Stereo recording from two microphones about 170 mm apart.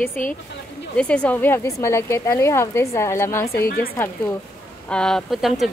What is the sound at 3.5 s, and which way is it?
Speech, 60° left (ahead or behind).